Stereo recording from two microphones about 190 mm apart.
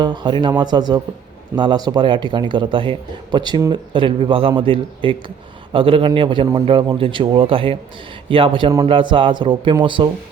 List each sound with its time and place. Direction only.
0.0 s a man's voice: 25° right (ahead or behind)